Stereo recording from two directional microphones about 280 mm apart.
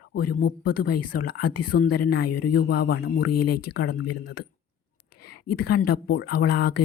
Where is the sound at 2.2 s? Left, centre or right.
Left.